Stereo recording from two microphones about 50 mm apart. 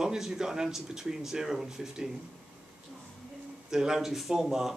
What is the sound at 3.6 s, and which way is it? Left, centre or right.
Speech, centre.